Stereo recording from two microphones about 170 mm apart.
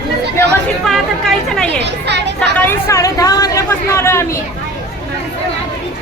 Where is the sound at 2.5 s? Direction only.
15° left (ahead or behind).